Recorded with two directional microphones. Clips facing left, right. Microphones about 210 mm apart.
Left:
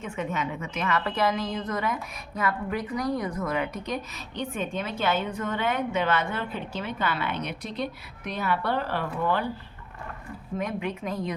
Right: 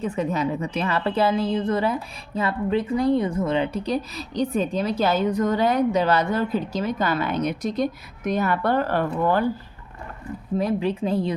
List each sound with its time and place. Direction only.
0.0 s a woman's voice: 35° right (ahead or behind)
10.6 s a woman's voice: 35° right (ahead or behind)